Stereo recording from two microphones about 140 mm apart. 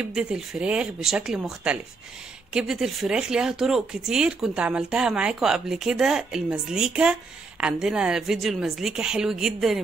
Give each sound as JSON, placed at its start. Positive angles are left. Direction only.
{"t": 0.1, "sound": "speech", "side_deg": -5}